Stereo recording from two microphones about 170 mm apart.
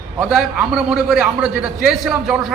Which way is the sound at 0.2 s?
5° right (ahead or behind).